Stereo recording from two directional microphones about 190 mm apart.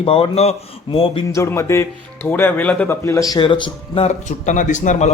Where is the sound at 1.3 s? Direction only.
15° left (ahead or behind).